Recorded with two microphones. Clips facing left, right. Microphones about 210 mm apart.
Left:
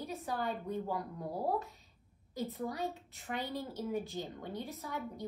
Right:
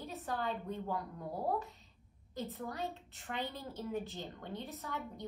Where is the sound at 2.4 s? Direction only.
Centre (ahead or behind).